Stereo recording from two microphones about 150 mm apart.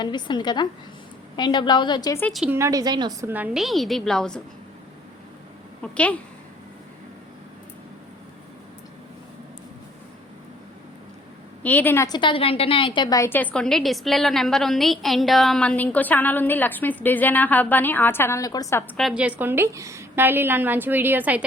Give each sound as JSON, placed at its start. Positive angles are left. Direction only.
{"t": 0.0, "sound": "a woman's voice", "side_deg": 30}
{"t": 2.3, "sound": "a woman's voice", "side_deg": -5}
{"t": 2.6, "sound": "a woman's voice", "side_deg": -20}
{"t": 3.2, "sound": "a woman's voice", "side_deg": -10}
{"t": 3.6, "sound": "a woman's voice", "side_deg": 0}
{"t": 5.8, "sound": "a woman's voice", "side_deg": 10}
{"t": 11.6, "sound": "a woman's voice", "side_deg": 10}
{"t": 12.0, "sound": "a woman's voice", "side_deg": 30}
{"t": 18.9, "sound": "a woman's voice", "side_deg": -5}